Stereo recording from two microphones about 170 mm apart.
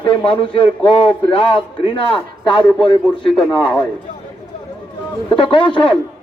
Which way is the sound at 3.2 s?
5° left (ahead or behind).